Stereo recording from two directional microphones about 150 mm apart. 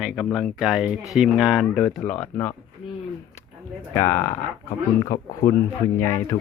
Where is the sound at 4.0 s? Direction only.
15° left (ahead or behind).